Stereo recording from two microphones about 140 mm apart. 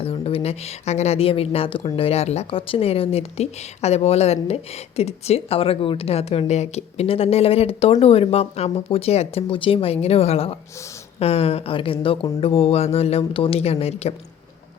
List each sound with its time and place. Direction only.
0.0 s speech: 40° left (ahead or behind)